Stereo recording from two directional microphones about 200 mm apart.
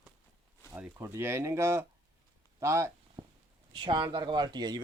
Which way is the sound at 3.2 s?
25° right (ahead or behind).